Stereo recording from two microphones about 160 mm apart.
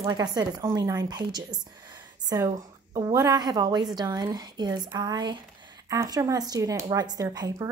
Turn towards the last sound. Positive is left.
turn(degrees=-20)  # may be behind; listen again after turning